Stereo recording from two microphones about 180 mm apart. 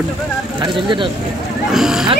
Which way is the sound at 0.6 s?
25° right (ahead or behind).